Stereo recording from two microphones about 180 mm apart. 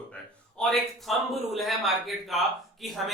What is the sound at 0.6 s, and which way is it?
A man's voice, centre (ahead or behind).